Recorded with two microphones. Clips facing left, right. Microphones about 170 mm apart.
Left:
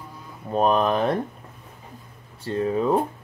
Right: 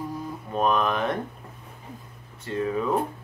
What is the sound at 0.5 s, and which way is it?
Speech, 35° left (ahead or behind).